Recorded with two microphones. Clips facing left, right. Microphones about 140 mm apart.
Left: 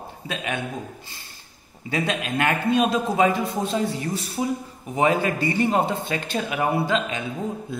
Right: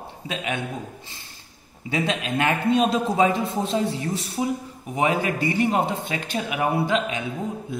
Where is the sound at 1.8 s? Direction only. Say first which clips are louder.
Even; 20° right (ahead or behind).